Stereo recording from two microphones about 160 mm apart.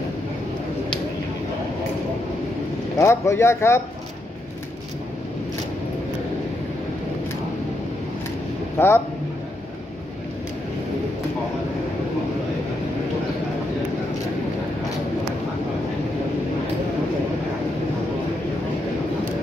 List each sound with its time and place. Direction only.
3.0 s speech: 15° left (ahead or behind)
8.7 s a man's voice: 15° left (ahead or behind)